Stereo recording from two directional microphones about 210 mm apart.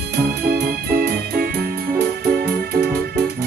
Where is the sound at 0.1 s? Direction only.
50° right (ahead or behind).